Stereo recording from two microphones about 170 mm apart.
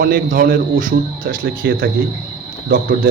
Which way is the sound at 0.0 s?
55° right (ahead or behind).